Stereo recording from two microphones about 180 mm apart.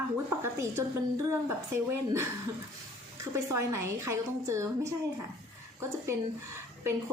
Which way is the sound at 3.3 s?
15° right (ahead or behind).